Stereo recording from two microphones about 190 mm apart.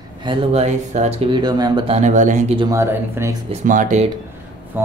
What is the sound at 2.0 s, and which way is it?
Speech, 40° right (ahead or behind).